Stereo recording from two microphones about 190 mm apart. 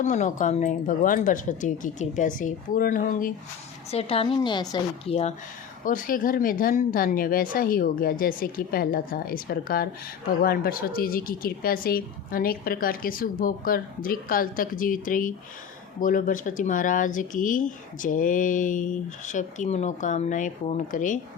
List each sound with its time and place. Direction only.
0.0 s speech: 40° left (ahead or behind)
3.9 s a woman's voice: 30° left (ahead or behind)
5.8 s a woman's voice: 45° left (ahead or behind)